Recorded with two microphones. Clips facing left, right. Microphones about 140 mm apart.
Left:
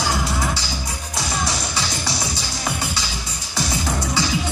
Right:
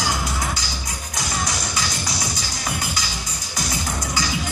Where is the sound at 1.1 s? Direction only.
30° left (ahead or behind).